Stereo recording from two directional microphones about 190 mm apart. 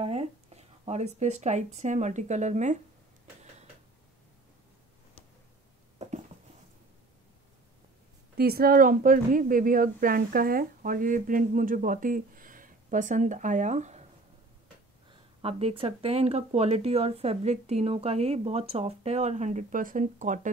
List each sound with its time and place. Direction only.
0.0 s speech: 35° right (ahead or behind)
5.9 s a sound: 40° right (ahead or behind)
8.4 s speech: 55° right (ahead or behind); by 14.0 s 40° right (ahead or behind)
15.4 s speech: 30° right (ahead or behind)